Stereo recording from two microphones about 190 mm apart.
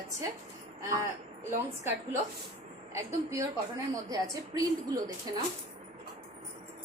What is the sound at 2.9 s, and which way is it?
A woman's voice, 15° right (ahead or behind).